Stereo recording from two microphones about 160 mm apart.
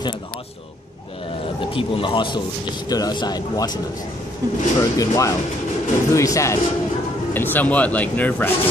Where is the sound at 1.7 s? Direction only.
35° left (ahead or behind).